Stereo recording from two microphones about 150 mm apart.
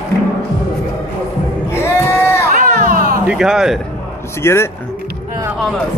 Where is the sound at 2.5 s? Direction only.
65° right (ahead or behind).